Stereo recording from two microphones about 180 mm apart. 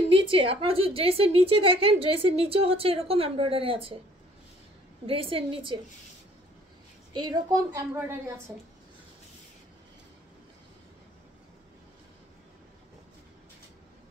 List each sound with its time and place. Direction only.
0.1 s a woman's voice: 30° right (ahead or behind)
5.0 s a woman's voice: 30° right (ahead or behind)
7.2 s a woman's voice: 25° right (ahead or behind)